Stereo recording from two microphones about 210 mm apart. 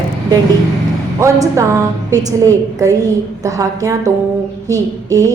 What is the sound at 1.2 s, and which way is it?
A woman's voice, 15° right (ahead or behind).